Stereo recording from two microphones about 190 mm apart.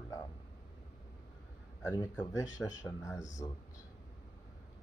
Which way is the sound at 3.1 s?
40° left (ahead or behind).